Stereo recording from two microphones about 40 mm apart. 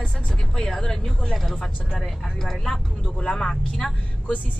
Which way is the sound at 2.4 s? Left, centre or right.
Centre.